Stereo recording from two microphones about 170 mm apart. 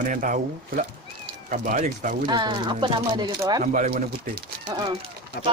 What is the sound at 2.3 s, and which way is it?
Speech, 25° right (ahead or behind).